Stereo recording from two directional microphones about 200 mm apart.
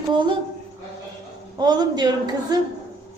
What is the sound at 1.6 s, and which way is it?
Speech, 20° right (ahead or behind).